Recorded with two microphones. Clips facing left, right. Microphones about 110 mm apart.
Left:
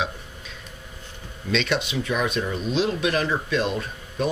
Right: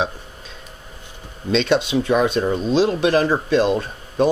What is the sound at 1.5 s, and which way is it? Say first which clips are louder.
Speech: right 7 dB; 35° right (ahead or behind).